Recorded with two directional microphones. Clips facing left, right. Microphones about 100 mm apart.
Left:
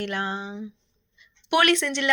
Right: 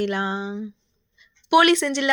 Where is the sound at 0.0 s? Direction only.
10° right (ahead or behind).